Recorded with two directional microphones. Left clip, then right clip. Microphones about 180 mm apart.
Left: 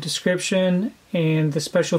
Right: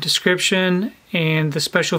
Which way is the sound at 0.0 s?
20° right (ahead or behind).